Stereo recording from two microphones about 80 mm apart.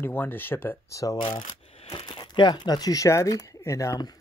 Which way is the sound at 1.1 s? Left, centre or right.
Left.